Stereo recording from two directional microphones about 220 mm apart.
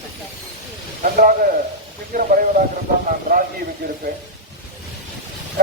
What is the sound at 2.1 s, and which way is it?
Speech, 35° right (ahead or behind).